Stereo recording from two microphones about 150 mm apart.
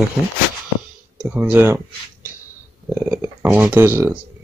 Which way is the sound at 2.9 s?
10° right (ahead or behind).